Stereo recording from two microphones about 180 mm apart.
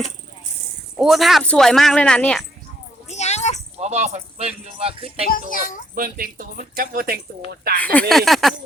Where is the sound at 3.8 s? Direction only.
40° right (ahead or behind).